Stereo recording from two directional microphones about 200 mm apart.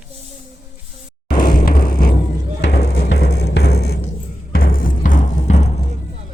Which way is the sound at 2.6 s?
60° left (ahead or behind).